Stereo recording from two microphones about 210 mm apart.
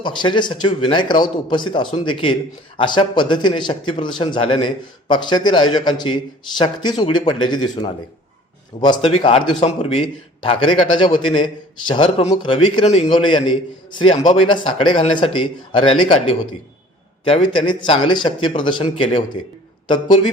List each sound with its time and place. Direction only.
0.0 s a man's voice: 20° left (ahead or behind)